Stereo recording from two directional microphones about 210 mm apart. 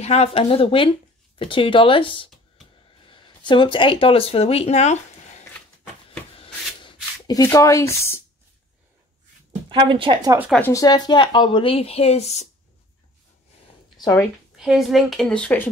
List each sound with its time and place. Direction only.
0.0 s speech: 30° left (ahead or behind)
6.4 s a sound: 20° left (ahead or behind)
9.7 s a woman's voice: 25° right (ahead or behind)
10.6 s speech: 15° left (ahead or behind); by 12.4 s 30° left (ahead or behind)
13.9 s a sound: 20° left (ahead or behind)
14.6 s speech: centre (ahead or behind)